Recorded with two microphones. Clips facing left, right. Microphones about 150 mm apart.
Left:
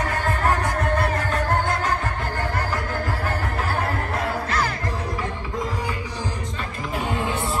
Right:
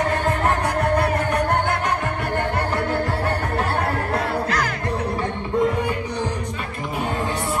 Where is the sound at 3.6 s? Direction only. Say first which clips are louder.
Right 3 dB; 30° right (ahead or behind).